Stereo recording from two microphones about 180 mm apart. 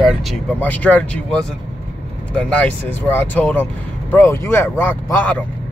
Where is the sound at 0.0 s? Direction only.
Centre (ahead or behind).